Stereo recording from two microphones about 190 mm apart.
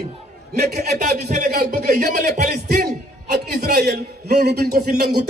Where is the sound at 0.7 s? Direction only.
55° right (ahead or behind).